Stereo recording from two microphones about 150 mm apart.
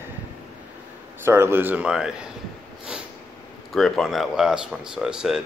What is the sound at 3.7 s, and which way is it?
Speech, centre (ahead or behind).